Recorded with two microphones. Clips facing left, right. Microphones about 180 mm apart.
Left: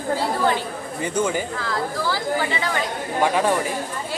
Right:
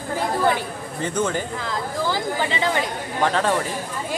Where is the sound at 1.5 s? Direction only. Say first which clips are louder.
Left 1 dB; 20° right (ahead or behind).